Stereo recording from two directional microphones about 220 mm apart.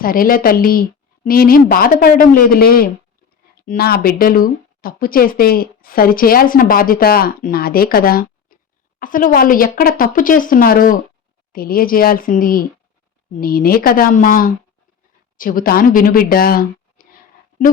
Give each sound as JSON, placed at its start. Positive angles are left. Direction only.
{"t": 0.0, "sound": "speech", "side_deg": 40}